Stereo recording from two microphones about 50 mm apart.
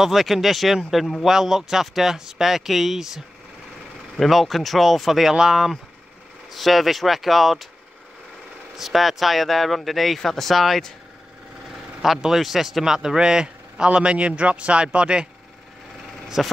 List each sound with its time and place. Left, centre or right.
0.0 s speech: centre
4.2 s speech: centre
8.7 s speech: centre
12.0 s speech: centre
16.4 s speech: centre